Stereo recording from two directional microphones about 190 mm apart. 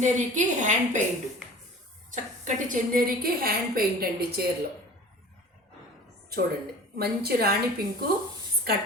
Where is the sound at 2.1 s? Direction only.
45° right (ahead or behind).